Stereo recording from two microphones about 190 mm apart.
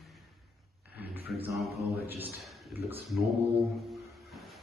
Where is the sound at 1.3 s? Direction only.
Centre (ahead or behind).